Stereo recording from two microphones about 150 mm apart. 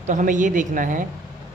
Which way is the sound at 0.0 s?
55° right (ahead or behind).